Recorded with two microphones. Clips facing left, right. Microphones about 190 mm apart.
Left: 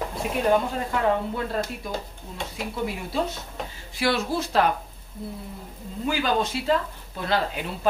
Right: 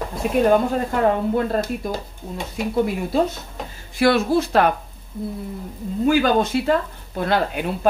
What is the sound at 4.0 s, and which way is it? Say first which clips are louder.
Speech: right 8 dB; 55° right (ahead or behind).